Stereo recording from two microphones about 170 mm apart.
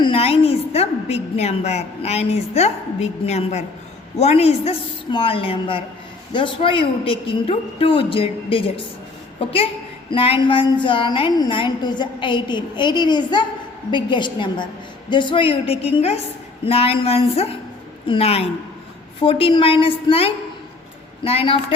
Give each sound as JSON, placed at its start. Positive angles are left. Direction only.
{"t": 0.0, "sound": "a woman's voice", "side_deg": 35}
{"t": 10.1, "sound": "a woman's voice", "side_deg": 35}